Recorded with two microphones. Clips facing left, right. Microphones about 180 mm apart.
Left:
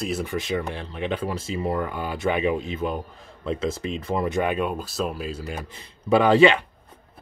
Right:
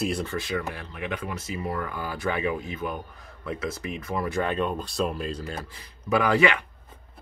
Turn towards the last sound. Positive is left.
turn(degrees=25)  # may be behind; listen again after turning